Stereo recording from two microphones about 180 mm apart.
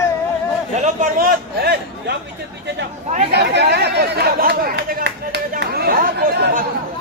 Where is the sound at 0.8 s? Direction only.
50° right (ahead or behind).